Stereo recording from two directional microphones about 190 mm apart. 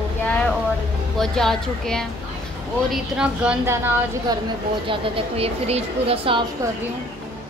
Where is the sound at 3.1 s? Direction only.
5° right (ahead or behind).